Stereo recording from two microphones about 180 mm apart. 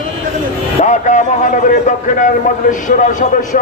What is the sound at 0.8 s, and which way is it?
A man's voice, 45° left (ahead or behind).